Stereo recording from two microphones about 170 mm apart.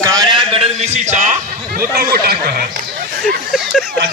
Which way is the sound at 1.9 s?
65° right (ahead or behind).